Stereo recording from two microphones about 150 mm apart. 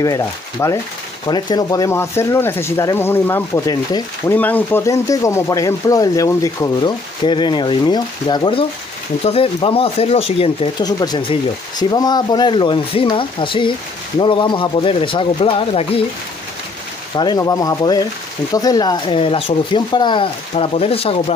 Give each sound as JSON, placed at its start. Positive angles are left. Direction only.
{"t": 0.0, "sound": "speech", "side_deg": 20}
{"t": 4.4, "sound": "speech", "side_deg": 10}
{"t": 6.8, "sound": "speech", "side_deg": 30}
{"t": 10.8, "sound": "speech", "side_deg": 25}
{"t": 17.1, "sound": "speech", "side_deg": 30}